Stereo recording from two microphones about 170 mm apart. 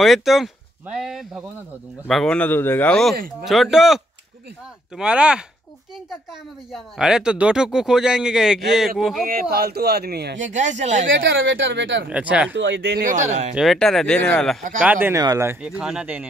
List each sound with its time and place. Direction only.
0.0 s speech: centre (ahead or behind)
6.7 s speech: 5° right (ahead or behind)
9.2 s speech: 60° right (ahead or behind)
10.4 s speech: 45° right (ahead or behind)
11.1 s speech: 90° right
12.1 s speech: 5° right (ahead or behind)
12.5 s speech: 90° right
13.0 s speech: 45° right (ahead or behind)
13.6 s speech: centre (ahead or behind)
14.8 s speech: 10° right (ahead or behind)
15.6 s speech: 5° right (ahead or behind)